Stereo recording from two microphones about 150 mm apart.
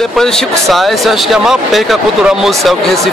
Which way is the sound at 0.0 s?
5° left (ahead or behind).